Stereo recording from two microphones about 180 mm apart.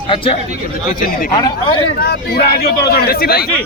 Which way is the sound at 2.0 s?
60° left (ahead or behind).